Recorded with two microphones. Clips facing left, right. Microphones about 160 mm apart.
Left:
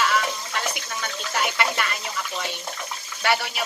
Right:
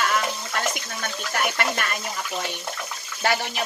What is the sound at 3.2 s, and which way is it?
Speech, 40° right (ahead or behind).